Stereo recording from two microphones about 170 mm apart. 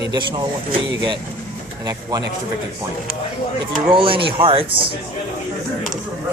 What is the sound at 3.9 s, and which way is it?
Speech, 30° right (ahead or behind).